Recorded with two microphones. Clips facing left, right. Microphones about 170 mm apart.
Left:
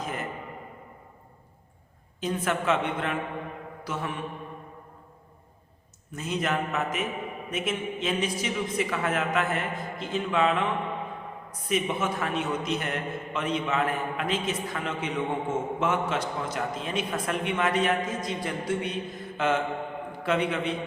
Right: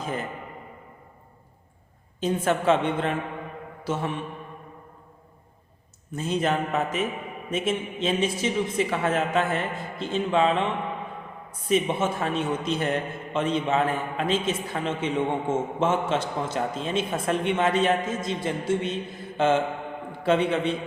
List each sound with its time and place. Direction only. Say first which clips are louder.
0.0 s speech: right 3 dB; 30° right (ahead or behind)
2.2 s a man's voice: right 5 dB; 30° right (ahead or behind)
6.1 s a man's voice: right 4 dB; 30° right (ahead or behind)